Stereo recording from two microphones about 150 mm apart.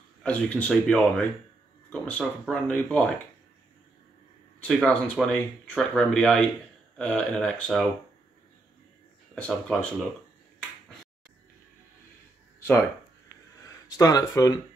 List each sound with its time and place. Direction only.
0.2 s speech: 10° left (ahead or behind)
4.6 s speech: 5° left (ahead or behind)
9.3 s speech: 5° left (ahead or behind)
12.5 s a sound: 15° left (ahead or behind)
13.8 s speech: 25° left (ahead or behind)